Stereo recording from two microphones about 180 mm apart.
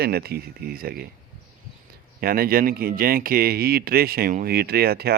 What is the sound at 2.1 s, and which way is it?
Speech, 55° right (ahead or behind).